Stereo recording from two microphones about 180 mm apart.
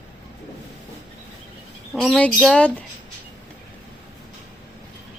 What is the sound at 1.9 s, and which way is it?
Speech, centre (ahead or behind).